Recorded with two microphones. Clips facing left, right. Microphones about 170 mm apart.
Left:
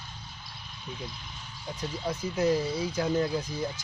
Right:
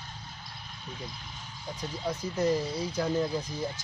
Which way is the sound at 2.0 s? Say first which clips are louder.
Left 1 dB; 5° left (ahead or behind).